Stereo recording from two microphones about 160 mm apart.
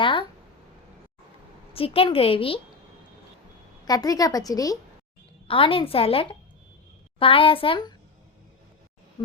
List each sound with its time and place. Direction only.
0.0 s a sound: 30° left (ahead or behind)
1.7 s a woman's voice: 35° left (ahead or behind)
3.8 s a woman's voice: 25° left (ahead or behind)
5.5 s a woman's voice: 35° left (ahead or behind)